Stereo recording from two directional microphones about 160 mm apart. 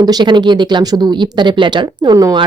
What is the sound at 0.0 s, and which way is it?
Speech, 25° right (ahead or behind).